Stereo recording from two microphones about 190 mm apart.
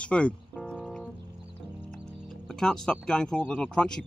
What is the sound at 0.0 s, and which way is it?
Music, 5° left (ahead or behind).